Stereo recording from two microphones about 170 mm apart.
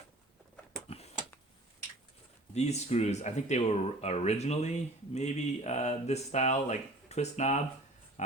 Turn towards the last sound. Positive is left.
turn(degrees=45)  # may be behind; listen again after turning